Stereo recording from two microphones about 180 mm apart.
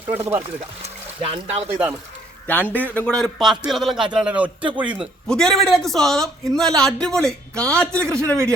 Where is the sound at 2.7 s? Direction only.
10° left (ahead or behind); by 5.0 s 10° right (ahead or behind).